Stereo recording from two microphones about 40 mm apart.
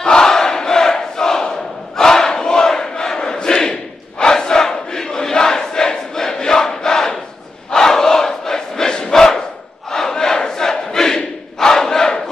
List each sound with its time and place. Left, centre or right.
0.0 s battle cry: centre
4.2 s crowd: centre